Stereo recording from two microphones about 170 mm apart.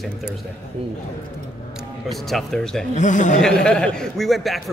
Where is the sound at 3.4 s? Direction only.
5° left (ahead or behind).